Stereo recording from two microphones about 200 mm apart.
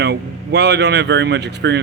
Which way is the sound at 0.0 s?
60° right (ahead or behind).